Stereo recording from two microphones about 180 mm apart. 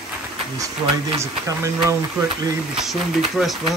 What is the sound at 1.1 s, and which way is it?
Speech, 15° right (ahead or behind).